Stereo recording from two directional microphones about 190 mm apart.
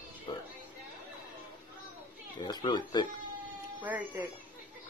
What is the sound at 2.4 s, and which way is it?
Speech, 25° left (ahead or behind).